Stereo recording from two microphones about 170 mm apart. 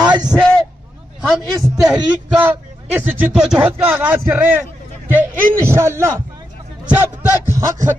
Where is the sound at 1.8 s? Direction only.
10° right (ahead or behind).